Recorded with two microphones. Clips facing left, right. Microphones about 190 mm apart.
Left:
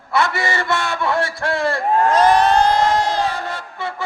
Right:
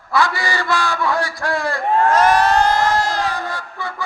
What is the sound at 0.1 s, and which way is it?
A man's voice, 25° left (ahead or behind).